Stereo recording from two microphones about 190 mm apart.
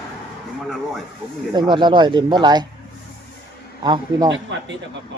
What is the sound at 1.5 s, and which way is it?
Speech, 25° right (ahead or behind).